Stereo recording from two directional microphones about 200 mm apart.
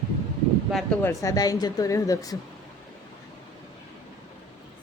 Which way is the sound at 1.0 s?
15° left (ahead or behind).